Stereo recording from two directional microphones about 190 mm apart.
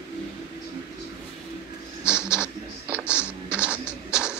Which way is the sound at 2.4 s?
5° right (ahead or behind).